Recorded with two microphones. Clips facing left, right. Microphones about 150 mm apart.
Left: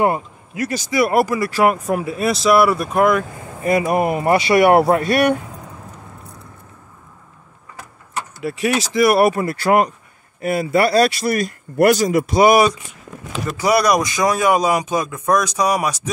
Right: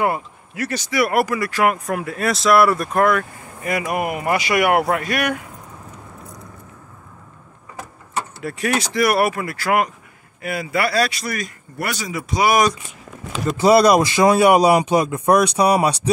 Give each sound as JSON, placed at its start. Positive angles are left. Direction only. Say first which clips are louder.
{"t": 0.6, "sound": "speech", "louder": "left 2 dB", "side_deg": 15}
{"t": 1.0, "sound": "speech", "louder": "left 3 dB", "side_deg": 30}
{"t": 2.1, "sound": "speech", "louder": "even", "side_deg": 5}
{"t": 3.6, "sound": "speech", "louder": "left 5 dB", "side_deg": 30}
{"t": 8.4, "sound": "speech", "louder": "left 3 dB", "side_deg": 20}
{"t": 11.8, "sound": "speech", "louder": "left 12 dB", "side_deg": 45}
{"t": 13.6, "sound": "a man's voice", "louder": "right 3 dB", "side_deg": -25}